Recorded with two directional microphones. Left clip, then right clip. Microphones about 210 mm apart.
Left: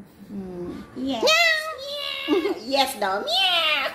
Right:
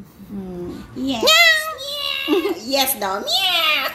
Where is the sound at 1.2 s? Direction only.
Centre (ahead or behind).